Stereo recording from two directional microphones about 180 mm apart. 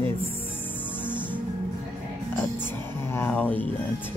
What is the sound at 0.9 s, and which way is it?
Music, 10° left (ahead or behind).